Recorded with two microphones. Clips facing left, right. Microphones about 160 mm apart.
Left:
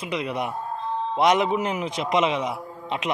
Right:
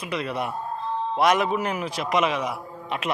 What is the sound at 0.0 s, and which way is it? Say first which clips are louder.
A man's voice: left 1 dB; 20° left (ahead or behind).